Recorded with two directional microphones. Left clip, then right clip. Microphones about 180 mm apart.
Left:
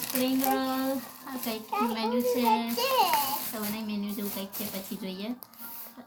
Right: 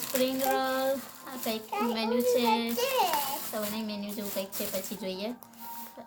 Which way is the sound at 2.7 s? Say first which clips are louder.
Left 2 dB; 20° right (ahead or behind).